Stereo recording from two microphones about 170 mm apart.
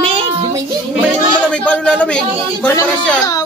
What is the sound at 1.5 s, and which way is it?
A man's voice, 5° left (ahead or behind).